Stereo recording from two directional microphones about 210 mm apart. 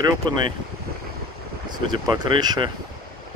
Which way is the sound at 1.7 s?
20° right (ahead or behind).